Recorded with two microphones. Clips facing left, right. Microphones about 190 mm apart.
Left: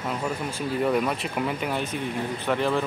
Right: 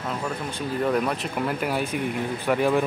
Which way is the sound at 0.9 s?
Centre (ahead or behind).